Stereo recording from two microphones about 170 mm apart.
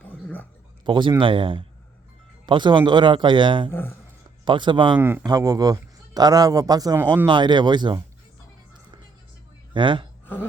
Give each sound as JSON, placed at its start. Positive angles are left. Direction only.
{"t": 0.0, "sound": "a sound", "side_deg": 10}
{"t": 0.9, "sound": "a man's voice", "side_deg": -25}
{"t": 3.7, "sound": "speech", "side_deg": 10}
{"t": 4.4, "sound": "a man's voice", "side_deg": -30}
{"t": 4.9, "sound": "a man's voice", "side_deg": -10}
{"t": 5.2, "sound": "a man's voice", "side_deg": -20}
{"t": 9.7, "sound": "a man's voice", "side_deg": -30}